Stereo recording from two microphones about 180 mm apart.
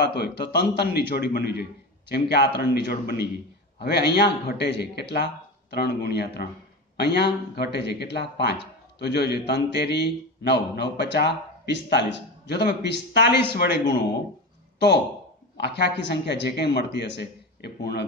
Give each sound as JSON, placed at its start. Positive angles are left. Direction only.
{"t": 0.0, "sound": "a man's voice", "side_deg": 65}
{"t": 15.5, "sound": "speech", "side_deg": 70}